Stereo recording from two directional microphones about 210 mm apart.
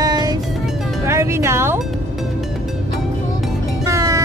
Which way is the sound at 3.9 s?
15° right (ahead or behind).